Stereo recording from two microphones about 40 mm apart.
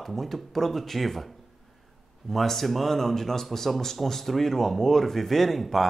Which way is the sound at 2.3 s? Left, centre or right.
Centre.